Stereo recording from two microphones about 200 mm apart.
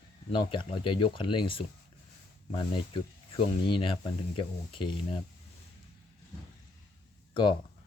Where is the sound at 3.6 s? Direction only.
25° left (ahead or behind).